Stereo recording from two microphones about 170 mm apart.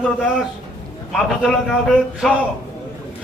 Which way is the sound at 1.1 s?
Centre (ahead or behind).